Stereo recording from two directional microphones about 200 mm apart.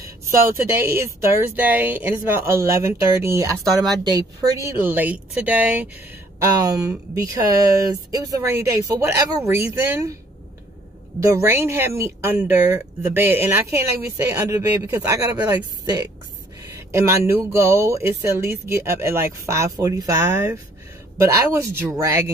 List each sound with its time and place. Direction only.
0.0 s speech: 15° right (ahead or behind)
11.1 s speech: 15° right (ahead or behind)